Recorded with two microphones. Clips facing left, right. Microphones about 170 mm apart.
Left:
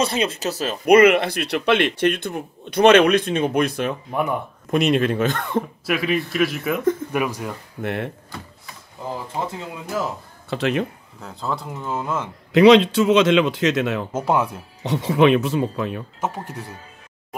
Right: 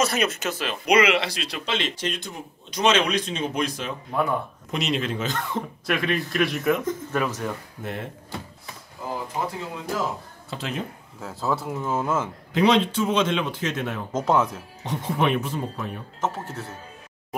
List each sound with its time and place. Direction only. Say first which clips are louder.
0.0 s speech: left 2 dB; 30° left (ahead or behind); by 3.9 s 55° left (ahead or behind)
4.1 s speech: right 2 dB; 15° left (ahead or behind)
4.6 s speech: left 9 dB; 55° left (ahead or behind)
5.9 s speech: even; 5° left (ahead or behind)
7.1 s speech: left 2 dB; 10° left (ahead or behind)
7.8 s speech: left 8 dB; 65° left (ahead or behind)
10.5 s speech: left 9 dB; 70° left (ahead or behind)
11.1 s speech: right 1 dB; 5° right (ahead or behind)
12.5 s a man's voice: left 8 dB; 80° left
14.1 s speech: right 1 dB; 10° left (ahead or behind)
14.8 s speech: left 8 dB; 85° left
16.2 s speech: right 2 dB; 15° left (ahead or behind)